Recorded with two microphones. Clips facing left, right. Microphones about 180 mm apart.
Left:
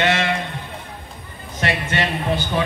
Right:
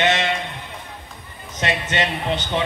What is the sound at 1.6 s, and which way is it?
A man's voice, 20° right (ahead or behind).